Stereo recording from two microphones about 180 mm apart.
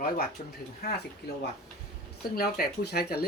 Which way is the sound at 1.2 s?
70° left (ahead or behind).